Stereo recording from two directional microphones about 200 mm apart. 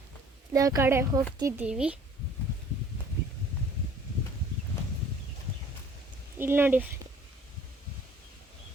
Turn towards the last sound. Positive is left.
turn(degrees=-10)  # may be behind; listen again after turning